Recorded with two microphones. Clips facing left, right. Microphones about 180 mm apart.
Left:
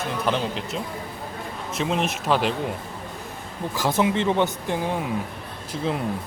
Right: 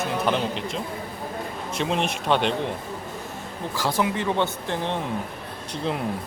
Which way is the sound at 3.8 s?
20° left (ahead or behind).